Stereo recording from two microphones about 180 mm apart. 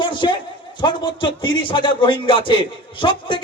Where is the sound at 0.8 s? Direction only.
25° left (ahead or behind).